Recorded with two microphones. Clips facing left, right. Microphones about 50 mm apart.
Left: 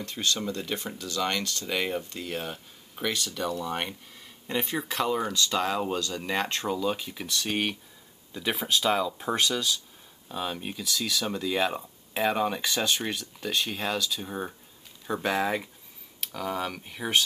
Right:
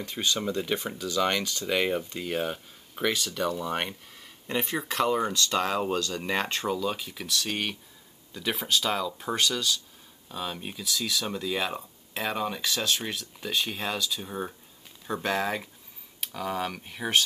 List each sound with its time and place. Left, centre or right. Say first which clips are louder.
0.0 s speech: right 1 dB; centre
3.5 s speech: right 1 dB; centre
4.5 s speech: even; centre